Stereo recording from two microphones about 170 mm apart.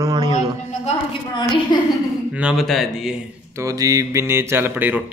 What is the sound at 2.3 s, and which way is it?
Speech, 5° right (ahead or behind).